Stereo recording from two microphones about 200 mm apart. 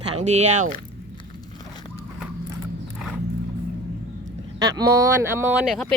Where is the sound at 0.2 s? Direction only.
35° right (ahead or behind).